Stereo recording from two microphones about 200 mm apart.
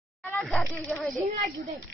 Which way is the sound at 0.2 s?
5° left (ahead or behind).